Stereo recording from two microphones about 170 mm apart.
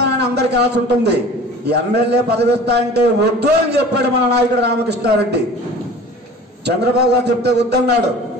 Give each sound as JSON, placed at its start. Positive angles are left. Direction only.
{"t": 0.0, "sound": "a man's voice", "side_deg": -80}
{"t": 6.6, "sound": "a man's voice", "side_deg": -80}